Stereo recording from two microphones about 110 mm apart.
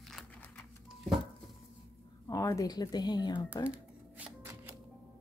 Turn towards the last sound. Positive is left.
turn(degrees=-10)  # may be behind; listen again after turning